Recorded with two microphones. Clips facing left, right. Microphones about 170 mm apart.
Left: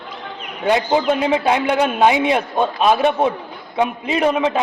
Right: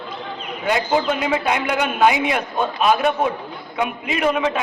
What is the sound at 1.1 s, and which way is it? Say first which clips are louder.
A man's voice: left 4 dB; 30° left (ahead or behind).